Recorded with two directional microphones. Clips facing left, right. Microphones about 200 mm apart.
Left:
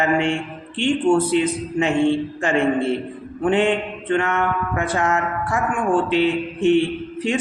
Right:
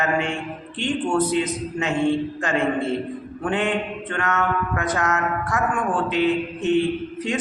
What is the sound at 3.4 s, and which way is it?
A man's voice, 25° left (ahead or behind).